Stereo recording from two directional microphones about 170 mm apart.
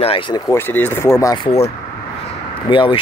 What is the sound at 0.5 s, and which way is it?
Speech, 10° left (ahead or behind).